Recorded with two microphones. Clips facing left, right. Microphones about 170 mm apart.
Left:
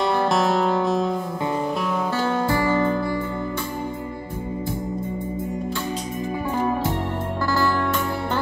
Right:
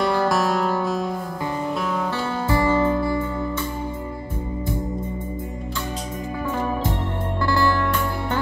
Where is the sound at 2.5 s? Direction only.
25° right (ahead or behind).